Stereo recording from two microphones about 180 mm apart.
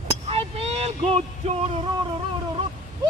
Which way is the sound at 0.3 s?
35° right (ahead or behind).